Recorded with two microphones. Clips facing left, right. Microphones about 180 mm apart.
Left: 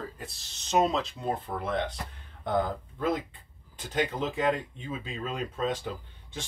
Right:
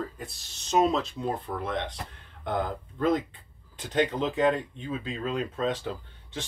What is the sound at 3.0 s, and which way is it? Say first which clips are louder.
Speech: right 4 dB; 10° left (ahead or behind).